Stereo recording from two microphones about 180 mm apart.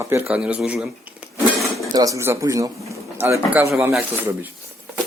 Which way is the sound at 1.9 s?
20° right (ahead or behind).